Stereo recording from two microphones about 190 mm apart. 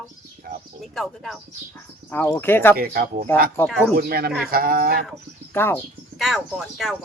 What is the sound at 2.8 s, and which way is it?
Speech, 50° right (ahead or behind).